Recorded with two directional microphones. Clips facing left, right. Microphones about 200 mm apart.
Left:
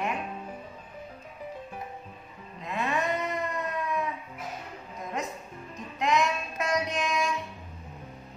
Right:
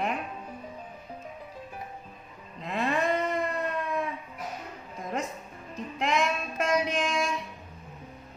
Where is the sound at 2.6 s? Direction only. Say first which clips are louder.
Right 2 dB; 35° right (ahead or behind).